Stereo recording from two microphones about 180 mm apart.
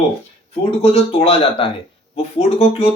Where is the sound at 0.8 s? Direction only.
35° left (ahead or behind).